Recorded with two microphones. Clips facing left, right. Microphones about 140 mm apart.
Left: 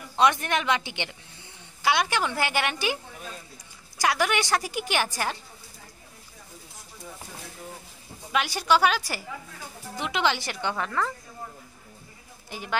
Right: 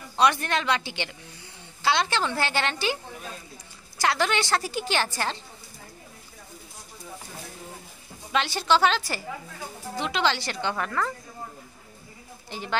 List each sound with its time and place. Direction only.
0.1 s a woman's voice: 20° left (ahead or behind)
4.0 s a woman's voice: 10° left (ahead or behind)
8.3 s a woman's voice: 10° left (ahead or behind)
10.8 s speech: centre (ahead or behind)
12.4 s speech: 10° left (ahead or behind)